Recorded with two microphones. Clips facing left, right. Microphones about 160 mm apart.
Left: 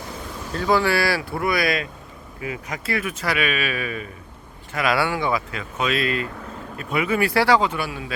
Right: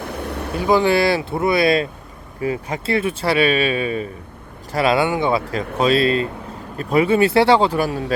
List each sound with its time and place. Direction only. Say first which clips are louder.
0.0 s vehicle: right 7 dB; 65° right (ahead or behind)
0.5 s speech: right 4 dB; 15° right (ahead or behind); by 8.1 s 40° right (ahead or behind)